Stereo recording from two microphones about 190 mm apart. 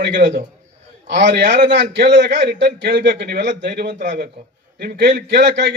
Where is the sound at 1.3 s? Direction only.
40° right (ahead or behind).